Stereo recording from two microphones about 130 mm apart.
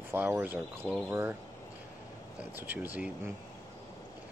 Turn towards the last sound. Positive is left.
turn(degrees=-15)  # may be behind; listen again after turning